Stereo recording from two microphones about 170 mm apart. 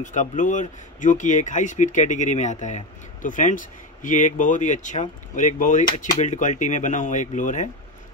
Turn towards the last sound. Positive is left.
turn(degrees=45)  # may be behind; listen again after turning